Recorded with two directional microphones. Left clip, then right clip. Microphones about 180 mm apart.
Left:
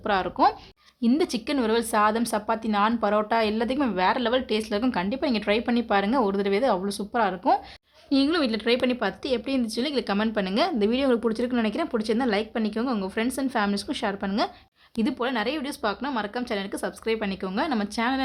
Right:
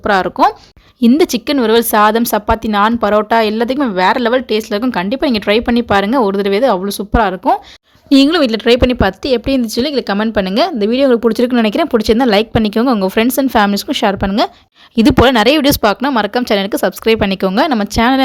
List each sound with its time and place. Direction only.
0.0 s speech: 35° right (ahead or behind)
14.9 s speech: 55° right (ahead or behind)